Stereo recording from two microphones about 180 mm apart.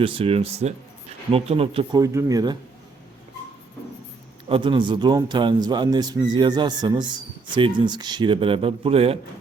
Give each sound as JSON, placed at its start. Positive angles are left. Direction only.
{"t": 0.0, "sound": "speech", "side_deg": -30}
{"t": 2.0, "sound": "a man's voice", "side_deg": -20}
{"t": 4.4, "sound": "a man's voice", "side_deg": -30}